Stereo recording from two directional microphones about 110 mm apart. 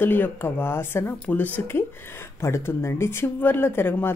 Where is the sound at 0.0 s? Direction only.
20° left (ahead or behind).